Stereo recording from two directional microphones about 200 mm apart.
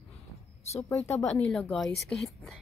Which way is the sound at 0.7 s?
15° left (ahead or behind).